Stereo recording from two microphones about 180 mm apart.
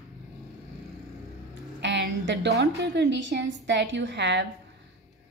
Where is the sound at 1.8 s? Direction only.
75° right (ahead or behind).